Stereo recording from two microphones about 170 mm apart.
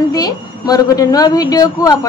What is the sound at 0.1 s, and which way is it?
Speech, 20° left (ahead or behind).